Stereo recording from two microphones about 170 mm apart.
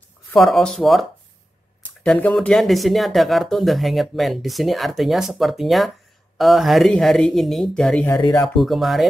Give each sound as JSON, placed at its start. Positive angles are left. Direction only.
{"t": 0.3, "sound": "speech", "side_deg": 0}
{"t": 2.0, "sound": "speech", "side_deg": 5}
{"t": 8.1, "sound": "speech", "side_deg": 20}
{"t": 8.5, "sound": "speech", "side_deg": 0}